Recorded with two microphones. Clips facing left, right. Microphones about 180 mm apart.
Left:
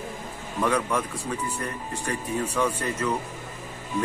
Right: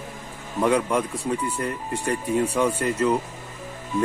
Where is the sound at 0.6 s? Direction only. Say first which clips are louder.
Right 4 dB; 15° right (ahead or behind).